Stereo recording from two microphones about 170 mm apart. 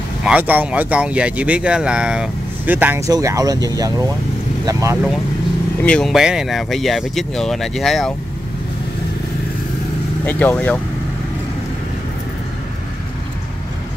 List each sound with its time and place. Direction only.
0.2 s speech: 10° right (ahead or behind)
5.9 s speech: 5° left (ahead or behind)
10.2 s speech: 10° left (ahead or behind)